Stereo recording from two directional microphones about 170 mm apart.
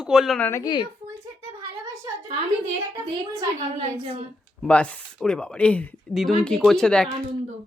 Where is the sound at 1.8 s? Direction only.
15° right (ahead or behind).